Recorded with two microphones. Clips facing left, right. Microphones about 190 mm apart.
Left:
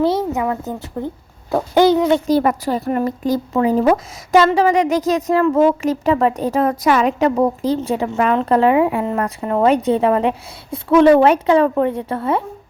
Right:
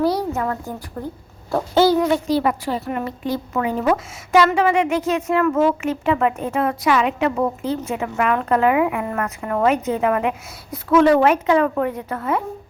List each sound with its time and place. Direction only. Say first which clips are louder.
0.0 s a woman's voice: left 3 dB; 25° left (ahead or behind)
1.5 s owl: left 3 dB; 15° left (ahead or behind)
2.2 s speech: left 4 dB; 45° left (ahead or behind); by 12.4 s 30° left (ahead or behind)